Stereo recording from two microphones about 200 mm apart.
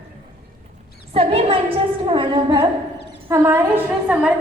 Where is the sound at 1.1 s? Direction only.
30° right (ahead or behind).